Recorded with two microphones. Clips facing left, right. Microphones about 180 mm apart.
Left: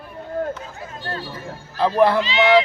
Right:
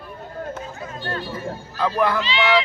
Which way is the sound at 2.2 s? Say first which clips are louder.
Left 4 dB; 45° left (ahead or behind).